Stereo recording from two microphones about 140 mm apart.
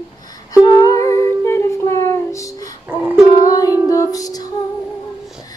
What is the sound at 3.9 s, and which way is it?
Music, 25° left (ahead or behind).